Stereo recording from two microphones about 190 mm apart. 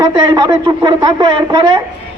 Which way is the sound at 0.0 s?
20° right (ahead or behind).